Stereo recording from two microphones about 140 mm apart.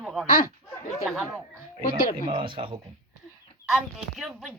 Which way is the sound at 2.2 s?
35° right (ahead or behind).